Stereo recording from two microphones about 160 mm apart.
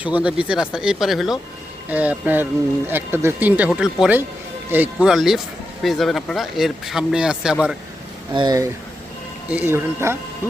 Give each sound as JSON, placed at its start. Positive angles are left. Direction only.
{"t": 0.0, "sound": "speech", "side_deg": -10}
{"t": 8.3, "sound": "speech", "side_deg": -30}
{"t": 9.5, "sound": "speech", "side_deg": -10}